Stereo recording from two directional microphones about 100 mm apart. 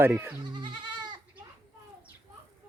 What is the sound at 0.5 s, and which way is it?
Goat, 50° right (ahead or behind).